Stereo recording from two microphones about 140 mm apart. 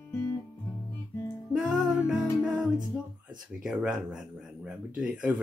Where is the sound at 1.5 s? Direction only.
5° right (ahead or behind).